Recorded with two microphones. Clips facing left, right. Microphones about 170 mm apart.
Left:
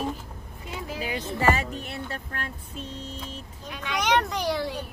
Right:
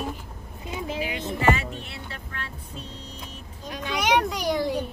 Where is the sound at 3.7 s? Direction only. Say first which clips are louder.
Right 2 dB; 35° right (ahead or behind).